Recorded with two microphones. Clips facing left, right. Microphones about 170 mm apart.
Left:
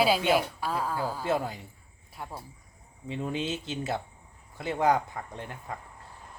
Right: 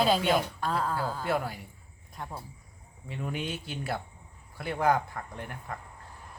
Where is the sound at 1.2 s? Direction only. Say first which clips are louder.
Left 3 dB; 20° left (ahead or behind).